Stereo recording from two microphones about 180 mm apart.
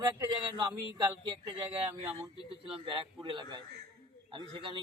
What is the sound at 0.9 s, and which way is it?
A man's voice, 20° right (ahead or behind).